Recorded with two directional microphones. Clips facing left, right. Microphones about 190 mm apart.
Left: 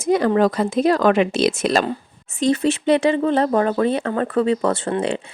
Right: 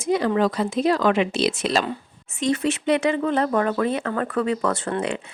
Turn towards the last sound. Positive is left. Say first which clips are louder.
# left 4 dB
turn(degrees=30)  # may be behind; listen again after turning